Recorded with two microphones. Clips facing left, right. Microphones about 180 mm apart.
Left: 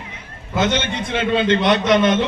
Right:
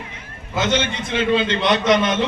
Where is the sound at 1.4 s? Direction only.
55° left (ahead or behind).